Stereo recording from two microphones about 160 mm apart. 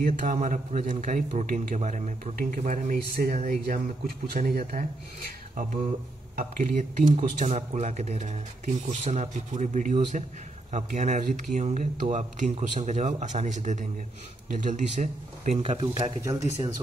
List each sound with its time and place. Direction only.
0.0 s a man's voice: 50° right (ahead or behind)
6.3 s a man's voice: 50° right (ahead or behind); by 16.1 s 35° right (ahead or behind)
16.3 s speech: 20° right (ahead or behind)